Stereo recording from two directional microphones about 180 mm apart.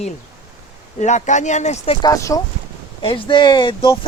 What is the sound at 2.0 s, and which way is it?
Speech, 15° left (ahead or behind).